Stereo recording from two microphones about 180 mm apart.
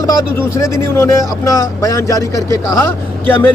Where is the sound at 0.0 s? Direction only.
20° left (ahead or behind).